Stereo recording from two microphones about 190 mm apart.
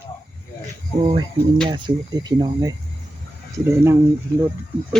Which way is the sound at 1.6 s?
25° right (ahead or behind).